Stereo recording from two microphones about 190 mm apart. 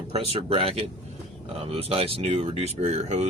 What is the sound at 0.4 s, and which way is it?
Speech, 30° right (ahead or behind).